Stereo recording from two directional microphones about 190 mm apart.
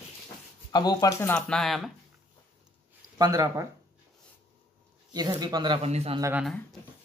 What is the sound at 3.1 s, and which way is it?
Speech, 20° right (ahead or behind).